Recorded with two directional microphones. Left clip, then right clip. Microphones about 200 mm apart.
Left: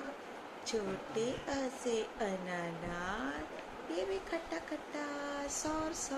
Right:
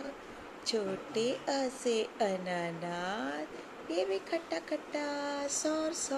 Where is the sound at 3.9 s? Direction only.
15° right (ahead or behind).